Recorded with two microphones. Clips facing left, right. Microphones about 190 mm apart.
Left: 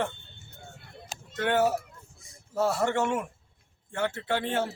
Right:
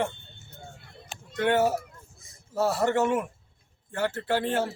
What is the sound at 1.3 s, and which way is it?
Speech, 15° right (ahead or behind).